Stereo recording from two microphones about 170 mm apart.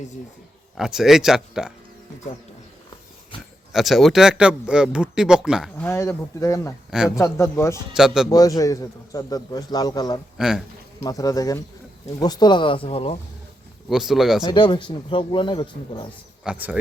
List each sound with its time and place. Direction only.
0.8 s speech: 5° right (ahead or behind)
3.7 s speech: centre (ahead or behind)
5.7 s speech: 15° left (ahead or behind)
7.9 s speech: 5° right (ahead or behind)
8.3 s a man's voice: 20° left (ahead or behind)
10.3 s speech: 5° right (ahead or behind)
11.0 s a man's voice: 20° left (ahead or behind)
13.9 s speech: centre (ahead or behind)
14.4 s a man's voice: 30° left (ahead or behind)
16.4 s speech: 5° right (ahead or behind)